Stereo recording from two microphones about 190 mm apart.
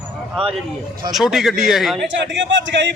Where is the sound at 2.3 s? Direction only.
75° right (ahead or behind).